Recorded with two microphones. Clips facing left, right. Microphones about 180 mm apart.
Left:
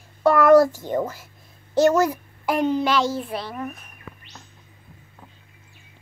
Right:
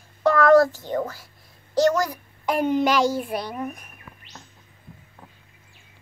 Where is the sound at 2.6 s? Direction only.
15° right (ahead or behind).